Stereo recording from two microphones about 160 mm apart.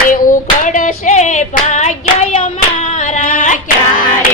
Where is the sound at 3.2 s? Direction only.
55° left (ahead or behind).